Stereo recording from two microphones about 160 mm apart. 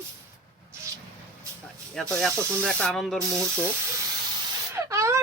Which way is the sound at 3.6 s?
15° right (ahead or behind).